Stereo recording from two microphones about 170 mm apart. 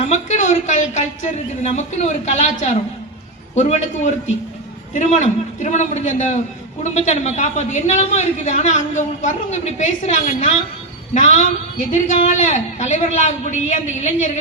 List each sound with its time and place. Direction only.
0.0 s a man's voice: 45° left (ahead or behind)